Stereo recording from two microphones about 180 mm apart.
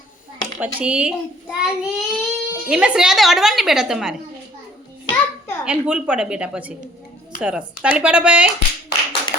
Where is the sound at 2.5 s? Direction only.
5° right (ahead or behind).